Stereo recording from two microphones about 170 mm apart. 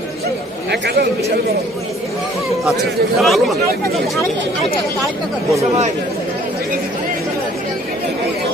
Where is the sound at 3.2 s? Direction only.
Centre (ahead or behind).